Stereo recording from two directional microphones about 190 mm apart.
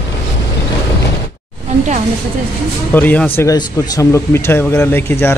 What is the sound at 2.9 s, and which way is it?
Speech, 10° left (ahead or behind).